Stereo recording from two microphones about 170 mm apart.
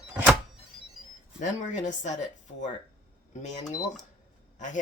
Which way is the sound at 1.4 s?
45° left (ahead or behind).